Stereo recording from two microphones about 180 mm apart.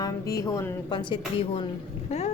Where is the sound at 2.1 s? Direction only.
35° left (ahead or behind).